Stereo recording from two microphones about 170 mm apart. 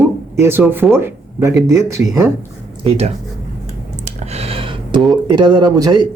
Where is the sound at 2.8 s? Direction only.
35° right (ahead or behind).